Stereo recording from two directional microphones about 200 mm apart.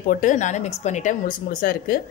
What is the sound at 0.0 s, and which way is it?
Speech, 40° left (ahead or behind).